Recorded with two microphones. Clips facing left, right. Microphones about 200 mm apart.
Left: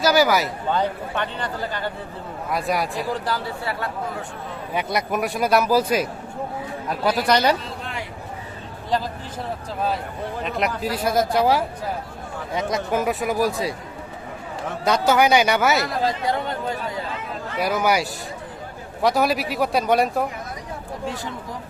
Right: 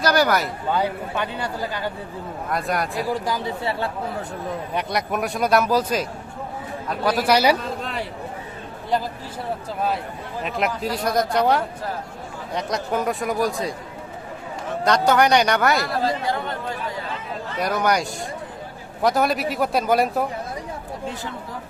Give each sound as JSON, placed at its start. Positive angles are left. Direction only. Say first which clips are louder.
{"t": 0.0, "sound": "speech", "louder": "left 1 dB", "side_deg": 5}
{"t": 0.7, "sound": "a man's voice", "louder": "right 1 dB", "side_deg": -10}
{"t": 2.5, "sound": "speech", "louder": "left 1 dB", "side_deg": 0}
{"t": 3.1, "sound": "a man's voice", "louder": "right 1 dB", "side_deg": -15}
{"t": 4.7, "sound": "speech", "louder": "left 3 dB", "side_deg": 5}
{"t": 10.4, "sound": "speech", "louder": "right 1 dB", "side_deg": 0}
{"t": 12.7, "sound": "speech", "louder": "even", "side_deg": 5}
{"t": 14.8, "sound": "speech", "louder": "even", "side_deg": 5}
{"t": 17.6, "sound": "speech", "louder": "left 1 dB", "side_deg": 5}